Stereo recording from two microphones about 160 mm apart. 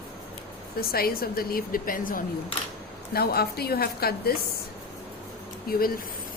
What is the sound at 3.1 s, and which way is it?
A woman's voice, 75° left (ahead or behind).